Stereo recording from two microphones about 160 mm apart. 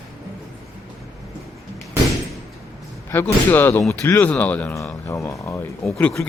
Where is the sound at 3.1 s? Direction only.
15° left (ahead or behind).